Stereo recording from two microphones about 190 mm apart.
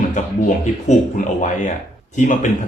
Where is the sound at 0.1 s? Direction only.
40° left (ahead or behind).